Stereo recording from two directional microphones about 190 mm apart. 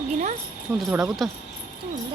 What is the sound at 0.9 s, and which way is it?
Speech, centre (ahead or behind).